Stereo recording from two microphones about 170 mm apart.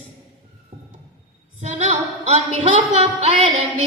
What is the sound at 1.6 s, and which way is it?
A woman's voice, 40° right (ahead or behind).